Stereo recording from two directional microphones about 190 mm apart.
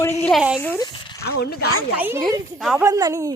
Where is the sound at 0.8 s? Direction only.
20° left (ahead or behind).